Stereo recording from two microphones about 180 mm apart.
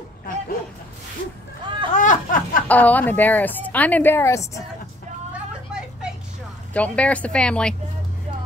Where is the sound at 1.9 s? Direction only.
45° left (ahead or behind).